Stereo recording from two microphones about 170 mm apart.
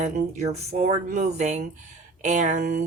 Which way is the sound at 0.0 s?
40° right (ahead or behind).